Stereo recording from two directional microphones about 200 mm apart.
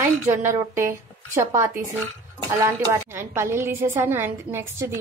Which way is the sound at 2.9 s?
15° right (ahead or behind).